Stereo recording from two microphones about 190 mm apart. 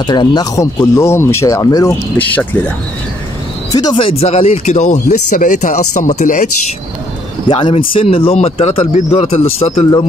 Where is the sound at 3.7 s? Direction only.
20° left (ahead or behind); by 6.5 s 40° left (ahead or behind).